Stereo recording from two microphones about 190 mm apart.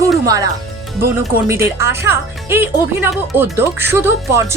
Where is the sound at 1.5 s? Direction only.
15° right (ahead or behind).